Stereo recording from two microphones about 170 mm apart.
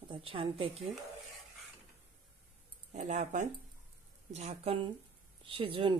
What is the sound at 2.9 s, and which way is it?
A woman's voice, 45° right (ahead or behind).